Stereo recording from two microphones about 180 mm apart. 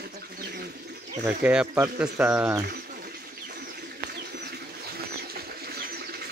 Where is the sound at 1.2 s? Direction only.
10° right (ahead or behind).